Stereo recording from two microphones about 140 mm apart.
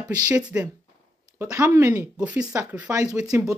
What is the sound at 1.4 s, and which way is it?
Speech, 20° right (ahead or behind).